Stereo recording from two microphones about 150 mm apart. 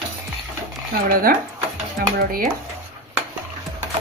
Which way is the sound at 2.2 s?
75° right (ahead or behind).